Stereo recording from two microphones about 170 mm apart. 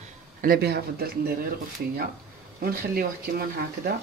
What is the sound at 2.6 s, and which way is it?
Speech, 60° right (ahead or behind).